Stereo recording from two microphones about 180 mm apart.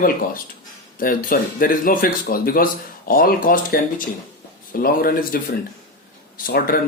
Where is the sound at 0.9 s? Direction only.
50° left (ahead or behind).